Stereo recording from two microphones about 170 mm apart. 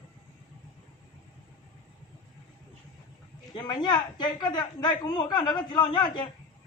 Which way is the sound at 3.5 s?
25° left (ahead or behind).